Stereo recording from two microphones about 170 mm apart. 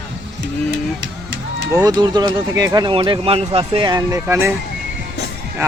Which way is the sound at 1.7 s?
20° right (ahead or behind).